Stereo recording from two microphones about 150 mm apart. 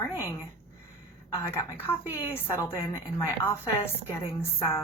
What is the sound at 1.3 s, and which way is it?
A woman's voice, 20° left (ahead or behind).